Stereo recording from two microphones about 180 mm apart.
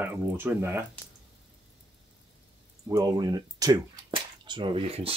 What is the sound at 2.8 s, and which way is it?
Speech, 20° right (ahead or behind).